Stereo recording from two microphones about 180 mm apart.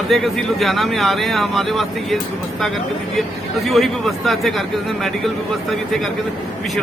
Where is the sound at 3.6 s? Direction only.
Centre (ahead or behind).